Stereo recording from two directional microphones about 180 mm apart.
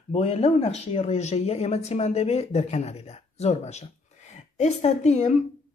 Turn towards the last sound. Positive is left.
turn(degrees=40)  # may be behind; listen again after turning